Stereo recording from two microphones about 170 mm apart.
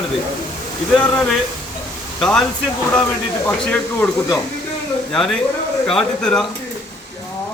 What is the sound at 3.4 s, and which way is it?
Speech, 10° left (ahead or behind).